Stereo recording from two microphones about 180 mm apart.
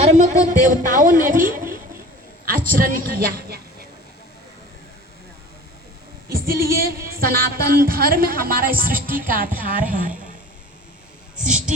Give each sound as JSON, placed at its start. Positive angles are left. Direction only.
{"t": 0.0, "sound": "a man's voice", "side_deg": -40}
{"t": 2.6, "sound": "a woman's voice", "side_deg": -55}
{"t": 6.2, "sound": "a woman's voice", "side_deg": -55}
{"t": 11.3, "sound": "a woman's voice", "side_deg": -5}